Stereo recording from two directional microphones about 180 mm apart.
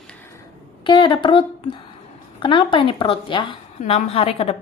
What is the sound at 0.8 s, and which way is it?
A woman's voice, 25° left (ahead or behind).